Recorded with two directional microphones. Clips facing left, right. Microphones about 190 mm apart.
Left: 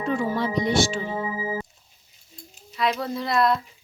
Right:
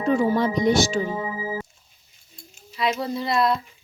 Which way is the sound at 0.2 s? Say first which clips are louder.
Right 4 dB; 45° right (ahead or behind).